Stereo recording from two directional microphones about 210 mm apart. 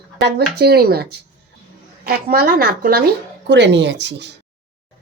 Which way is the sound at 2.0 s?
45° right (ahead or behind).